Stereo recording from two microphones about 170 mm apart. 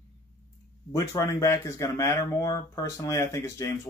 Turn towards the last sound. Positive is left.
turn(degrees=15)  # may be behind; listen again after turning